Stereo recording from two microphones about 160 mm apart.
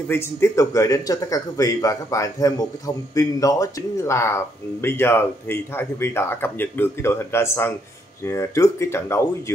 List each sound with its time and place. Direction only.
0.1 s speech: 15° left (ahead or behind)